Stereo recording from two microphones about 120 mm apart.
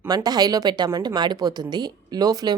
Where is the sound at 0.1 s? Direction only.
35° right (ahead or behind).